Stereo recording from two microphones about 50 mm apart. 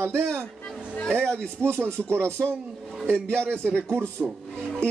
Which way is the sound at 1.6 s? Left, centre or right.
Right.